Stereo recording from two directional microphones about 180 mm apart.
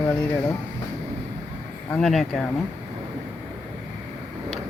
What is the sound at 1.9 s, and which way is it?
Speech, centre (ahead or behind).